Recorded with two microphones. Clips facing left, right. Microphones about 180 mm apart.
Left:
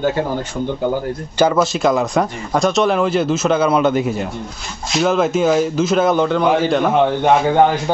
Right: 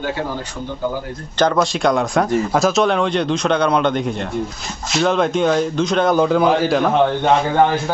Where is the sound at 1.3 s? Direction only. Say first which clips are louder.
Left 1 dB; 5° left (ahead or behind).